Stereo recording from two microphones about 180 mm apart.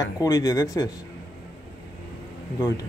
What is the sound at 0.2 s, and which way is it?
Speech, 20° left (ahead or behind).